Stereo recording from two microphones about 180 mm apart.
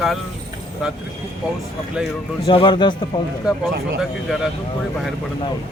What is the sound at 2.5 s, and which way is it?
Speech, 25° left (ahead or behind).